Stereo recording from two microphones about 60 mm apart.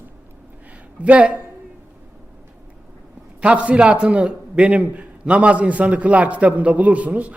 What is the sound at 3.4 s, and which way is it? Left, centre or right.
A man's voice, right.